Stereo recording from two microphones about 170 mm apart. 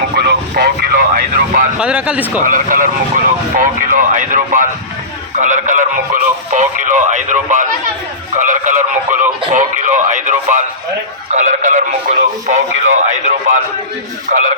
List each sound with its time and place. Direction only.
0.2 s speech: 65° right (ahead or behind)
1.8 s speech: 5° right (ahead or behind)
2.4 s speech: 50° right (ahead or behind)